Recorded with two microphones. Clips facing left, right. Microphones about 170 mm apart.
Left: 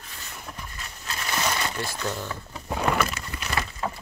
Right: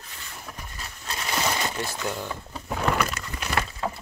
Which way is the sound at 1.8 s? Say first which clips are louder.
Even; 15° right (ahead or behind).